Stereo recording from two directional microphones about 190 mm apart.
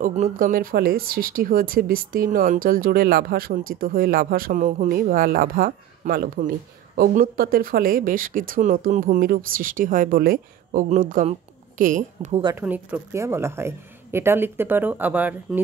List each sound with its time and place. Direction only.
0.0 s a woman's voice: 45° right (ahead or behind)
12.5 s speech: 10° right (ahead or behind)